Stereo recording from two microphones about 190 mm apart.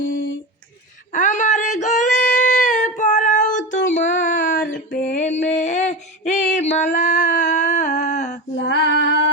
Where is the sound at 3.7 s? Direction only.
75° left (ahead or behind).